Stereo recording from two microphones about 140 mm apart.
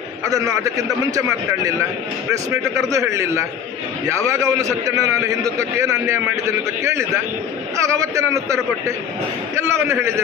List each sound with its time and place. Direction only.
0.3 s a man's voice: 25° right (ahead or behind)